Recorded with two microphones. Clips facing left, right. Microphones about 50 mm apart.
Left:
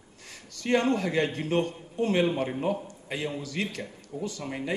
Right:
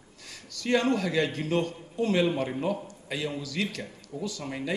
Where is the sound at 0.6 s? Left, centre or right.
Left.